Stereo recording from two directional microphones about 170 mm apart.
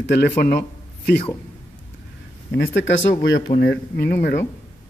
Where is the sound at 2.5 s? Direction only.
90° left.